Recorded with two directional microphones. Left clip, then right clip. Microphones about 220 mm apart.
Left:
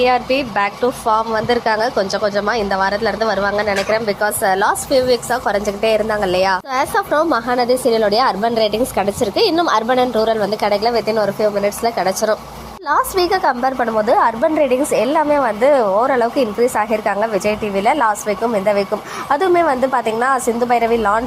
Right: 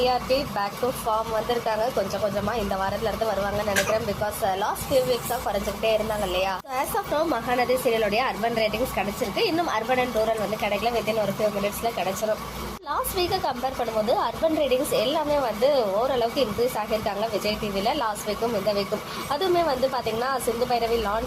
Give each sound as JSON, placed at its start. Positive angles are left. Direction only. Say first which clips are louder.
{"t": 0.0, "sound": "a woman's voice", "louder": "left 8 dB", "side_deg": 25}
{"t": 6.9, "sound": "a woman's voice", "louder": "left 9 dB", "side_deg": 25}
{"t": 12.9, "sound": "a woman's voice", "louder": "left 11 dB", "side_deg": 30}
{"t": 17.4, "sound": "a woman's voice", "louder": "left 9 dB", "side_deg": 25}
{"t": 19.3, "sound": "a woman's voice", "louder": "left 9 dB", "side_deg": 25}